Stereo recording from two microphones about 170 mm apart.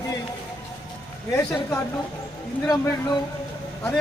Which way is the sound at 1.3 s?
15° left (ahead or behind).